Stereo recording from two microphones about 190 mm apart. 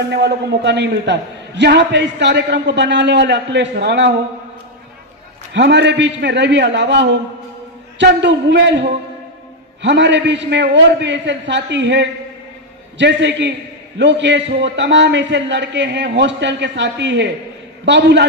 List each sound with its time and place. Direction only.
0.1 s a man's voice: 65° right (ahead or behind)
5.5 s a man's voice: 65° right (ahead or behind)